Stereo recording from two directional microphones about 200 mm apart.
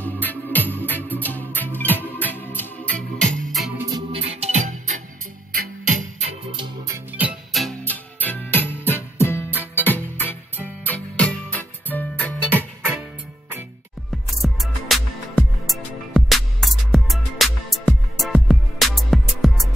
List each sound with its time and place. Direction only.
0.0 s music: 10° left (ahead or behind)
3.9 s music: 30° right (ahead or behind)
6.4 s music: 25° right (ahead or behind)
7.1 s music: 5° right (ahead or behind); by 9.5 s 10° left (ahead or behind)
9.5 s music: 10° right (ahead or behind)
9.8 s music: 10° left (ahead or behind)
14.1 s music: centre (ahead or behind)